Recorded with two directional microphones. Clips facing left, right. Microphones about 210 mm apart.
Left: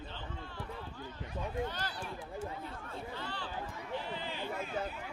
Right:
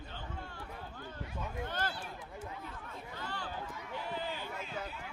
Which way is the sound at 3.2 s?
45° right (ahead or behind).